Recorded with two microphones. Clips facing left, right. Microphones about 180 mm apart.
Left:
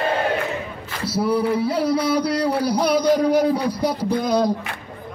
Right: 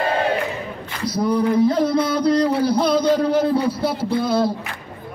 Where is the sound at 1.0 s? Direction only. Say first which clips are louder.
Right 1 dB; 5° left (ahead or behind).